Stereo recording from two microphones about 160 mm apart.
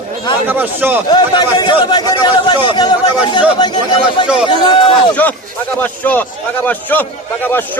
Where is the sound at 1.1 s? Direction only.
25° left (ahead or behind).